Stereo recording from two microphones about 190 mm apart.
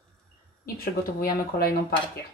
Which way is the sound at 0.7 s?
50° left (ahead or behind).